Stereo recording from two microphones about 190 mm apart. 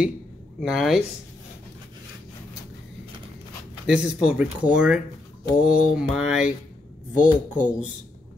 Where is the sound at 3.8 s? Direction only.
5° right (ahead or behind).